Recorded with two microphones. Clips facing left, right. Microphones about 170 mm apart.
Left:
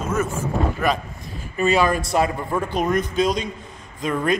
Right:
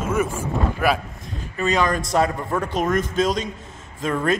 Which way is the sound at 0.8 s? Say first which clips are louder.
Right 2 dB; 10° right (ahead or behind).